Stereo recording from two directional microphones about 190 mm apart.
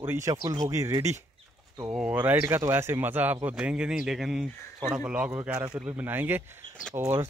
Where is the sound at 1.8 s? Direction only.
5° right (ahead or behind).